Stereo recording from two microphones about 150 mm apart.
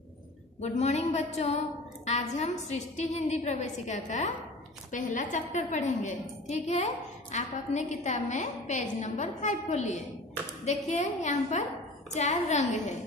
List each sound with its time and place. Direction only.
0.6 s a woman's voice: 50° left (ahead or behind)